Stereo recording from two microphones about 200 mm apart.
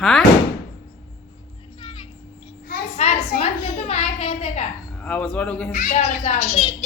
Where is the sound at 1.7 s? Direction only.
25° left (ahead or behind).